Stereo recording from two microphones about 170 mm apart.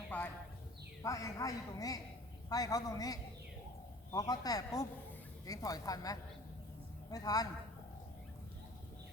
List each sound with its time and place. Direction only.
0.1 s clip-clop: 10° left (ahead or behind)
1.0 s a man's voice: 20° left (ahead or behind)